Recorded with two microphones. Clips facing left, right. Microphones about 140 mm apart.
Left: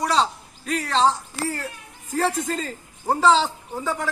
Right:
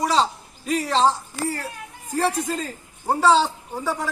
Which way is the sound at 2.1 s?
10° right (ahead or behind).